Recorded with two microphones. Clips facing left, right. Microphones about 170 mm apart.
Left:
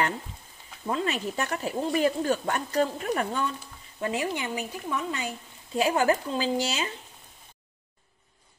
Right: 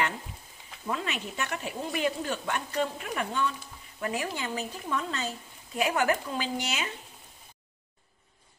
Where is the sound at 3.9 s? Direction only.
25° left (ahead or behind).